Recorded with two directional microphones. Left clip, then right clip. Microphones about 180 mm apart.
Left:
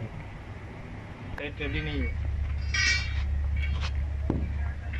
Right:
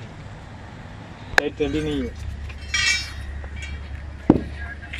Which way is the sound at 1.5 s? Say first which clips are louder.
Right 10 dB; 35° right (ahead or behind).